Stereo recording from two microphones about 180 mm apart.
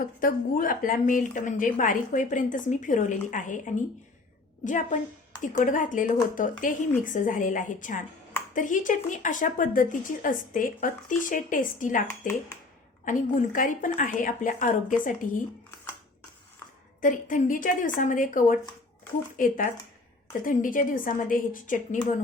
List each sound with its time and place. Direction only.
0.0 s speech: 50° left (ahead or behind)
13.1 s speech: 45° left (ahead or behind)
17.0 s speech: 45° left (ahead or behind)